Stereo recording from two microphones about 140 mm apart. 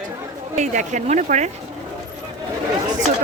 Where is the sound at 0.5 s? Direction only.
60° right (ahead or behind).